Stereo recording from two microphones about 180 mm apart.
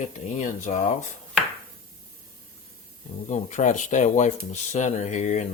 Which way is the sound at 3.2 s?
40° left (ahead or behind).